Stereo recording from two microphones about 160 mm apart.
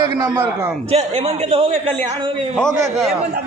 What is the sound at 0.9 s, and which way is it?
A man's voice, 40° right (ahead or behind).